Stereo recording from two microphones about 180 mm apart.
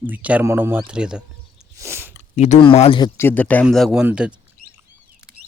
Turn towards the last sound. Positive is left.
turn(degrees=-5)  # may be behind; listen again after turning